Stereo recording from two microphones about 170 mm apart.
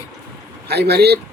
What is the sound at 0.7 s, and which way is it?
Speech, 70° right (ahead or behind).